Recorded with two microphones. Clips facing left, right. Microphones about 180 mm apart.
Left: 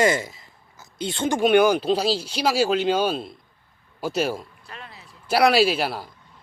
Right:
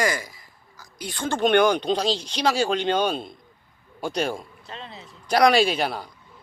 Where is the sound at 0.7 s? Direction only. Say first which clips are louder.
Left 5 dB; 25° left (ahead or behind).